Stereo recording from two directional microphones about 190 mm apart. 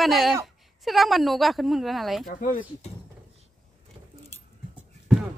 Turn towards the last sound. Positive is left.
turn(degrees=-5)  # may be behind; listen again after turning